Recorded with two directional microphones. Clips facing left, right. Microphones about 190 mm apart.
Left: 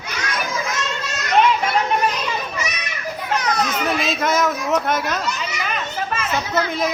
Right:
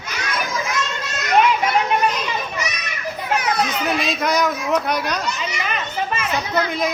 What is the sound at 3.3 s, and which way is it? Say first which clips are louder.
A child's voice: even; 10° right (ahead or behind).